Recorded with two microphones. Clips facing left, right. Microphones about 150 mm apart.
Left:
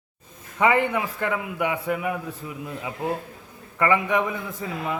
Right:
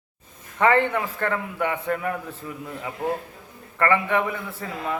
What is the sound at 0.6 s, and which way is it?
Speech, 10° left (ahead or behind).